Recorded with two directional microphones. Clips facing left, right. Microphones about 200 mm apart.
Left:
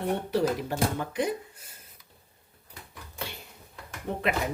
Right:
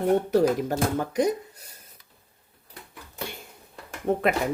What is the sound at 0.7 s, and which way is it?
Speech, 45° right (ahead or behind).